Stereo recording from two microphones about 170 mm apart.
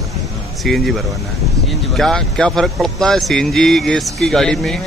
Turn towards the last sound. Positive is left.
turn(degrees=0)  # may be behind; listen again after turning